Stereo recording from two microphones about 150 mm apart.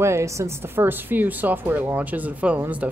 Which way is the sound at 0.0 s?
20° right (ahead or behind).